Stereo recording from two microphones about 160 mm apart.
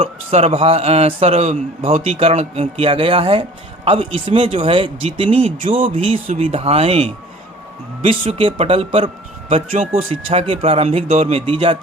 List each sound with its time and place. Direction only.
0.0 s a man's voice: 40° right (ahead or behind)